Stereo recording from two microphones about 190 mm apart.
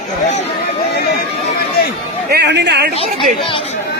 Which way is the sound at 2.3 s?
65° right (ahead or behind).